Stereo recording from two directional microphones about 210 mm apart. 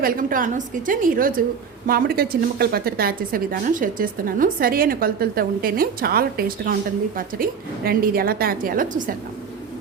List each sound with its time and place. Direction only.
0.0 s a woman's voice: 40° right (ahead or behind)
7.9 s a woman's voice: 45° right (ahead or behind)